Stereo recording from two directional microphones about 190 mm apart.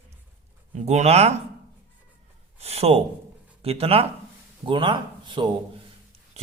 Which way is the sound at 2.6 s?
35° right (ahead or behind).